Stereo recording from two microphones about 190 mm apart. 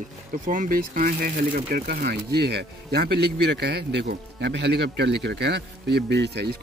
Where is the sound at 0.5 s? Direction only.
45° right (ahead or behind).